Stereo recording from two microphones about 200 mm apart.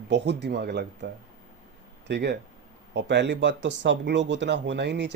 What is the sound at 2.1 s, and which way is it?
Speech, 60° right (ahead or behind).